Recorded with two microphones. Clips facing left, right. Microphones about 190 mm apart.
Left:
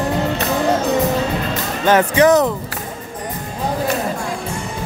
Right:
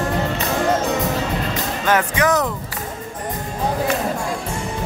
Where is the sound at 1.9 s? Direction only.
30° left (ahead or behind).